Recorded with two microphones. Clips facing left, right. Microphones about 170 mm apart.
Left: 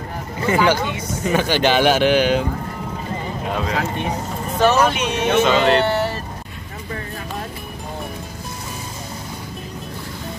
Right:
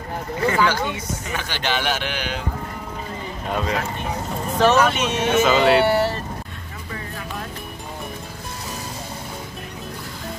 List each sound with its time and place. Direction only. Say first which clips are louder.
0.5 s a man's voice: left 4 dB; 20° left (ahead or behind)
3.4 s speech: left 1 dB; centre (ahead or behind)